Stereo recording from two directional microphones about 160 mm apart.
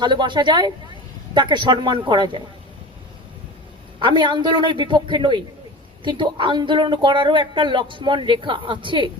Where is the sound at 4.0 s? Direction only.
30° right (ahead or behind).